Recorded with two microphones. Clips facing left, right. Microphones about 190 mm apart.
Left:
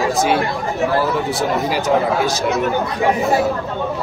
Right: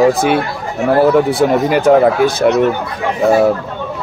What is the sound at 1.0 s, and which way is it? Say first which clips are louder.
Speech: right 9 dB; 55° right (ahead or behind).